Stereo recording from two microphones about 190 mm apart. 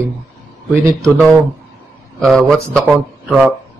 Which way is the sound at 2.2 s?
Centre (ahead or behind).